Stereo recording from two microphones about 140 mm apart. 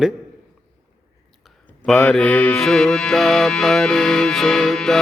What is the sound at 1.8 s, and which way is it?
Mantra, 10° left (ahead or behind).